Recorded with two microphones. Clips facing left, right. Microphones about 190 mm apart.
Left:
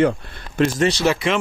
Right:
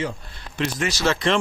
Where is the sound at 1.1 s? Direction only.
5° left (ahead or behind).